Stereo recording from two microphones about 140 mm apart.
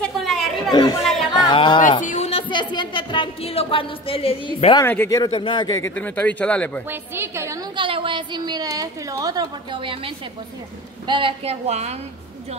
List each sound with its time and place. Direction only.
0.0 s chatter: centre (ahead or behind)
1.3 s a sound: 35° left (ahead or behind)
1.8 s speech: 70° left (ahead or behind)
2.1 s a sound: 45° left (ahead or behind)
4.8 s speech: 15° left (ahead or behind)
5.1 s a man's voice: 35° left (ahead or behind)
5.9 s speech: 10° left (ahead or behind)
6.9 s a woman's voice: 20° right (ahead or behind)
7.7 s a woman's voice: 35° right (ahead or behind)